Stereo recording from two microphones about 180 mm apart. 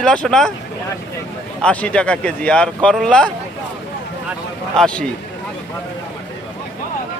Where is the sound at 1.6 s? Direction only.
5° left (ahead or behind).